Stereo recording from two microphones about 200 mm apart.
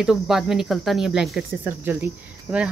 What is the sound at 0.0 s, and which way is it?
Speech, centre (ahead or behind).